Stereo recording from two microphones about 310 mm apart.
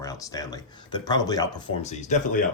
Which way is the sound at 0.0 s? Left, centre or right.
Centre.